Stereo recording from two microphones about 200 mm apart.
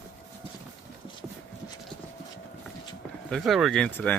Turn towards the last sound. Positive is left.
turn(degrees=10)  # may be behind; listen again after turning